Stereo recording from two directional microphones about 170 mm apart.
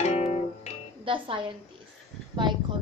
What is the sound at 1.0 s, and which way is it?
Speech, 30° right (ahead or behind).